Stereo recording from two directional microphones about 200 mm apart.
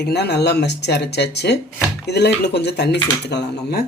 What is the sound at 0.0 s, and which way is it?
A man's voice, 55° left (ahead or behind).